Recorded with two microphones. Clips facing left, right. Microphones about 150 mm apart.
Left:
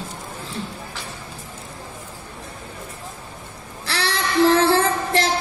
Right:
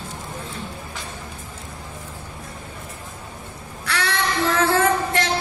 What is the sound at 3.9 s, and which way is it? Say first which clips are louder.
Female singing: right 1 dB; 30° left (ahead or behind).